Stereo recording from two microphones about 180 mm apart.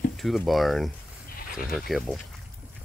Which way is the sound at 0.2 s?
Centre (ahead or behind).